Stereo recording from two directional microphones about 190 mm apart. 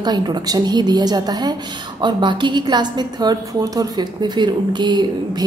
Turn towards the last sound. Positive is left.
turn(degrees=-25)  # may be behind; listen again after turning